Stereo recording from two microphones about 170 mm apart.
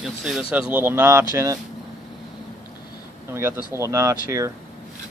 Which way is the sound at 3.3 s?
15° right (ahead or behind).